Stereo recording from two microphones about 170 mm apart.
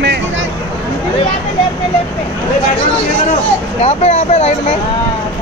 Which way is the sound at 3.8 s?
40° left (ahead or behind).